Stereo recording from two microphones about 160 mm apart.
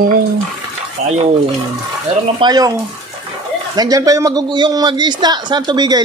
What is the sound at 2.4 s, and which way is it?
Speech, 25° right (ahead or behind).